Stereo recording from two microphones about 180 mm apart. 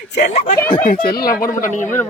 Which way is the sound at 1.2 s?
55° left (ahead or behind).